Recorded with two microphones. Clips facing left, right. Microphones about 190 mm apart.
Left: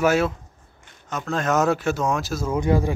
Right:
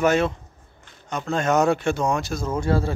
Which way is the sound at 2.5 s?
15° left (ahead or behind).